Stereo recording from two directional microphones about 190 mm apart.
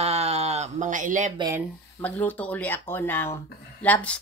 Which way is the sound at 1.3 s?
20° right (ahead or behind).